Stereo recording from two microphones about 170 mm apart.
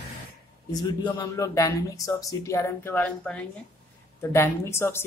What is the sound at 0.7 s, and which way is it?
A woman's voice, 25° left (ahead or behind).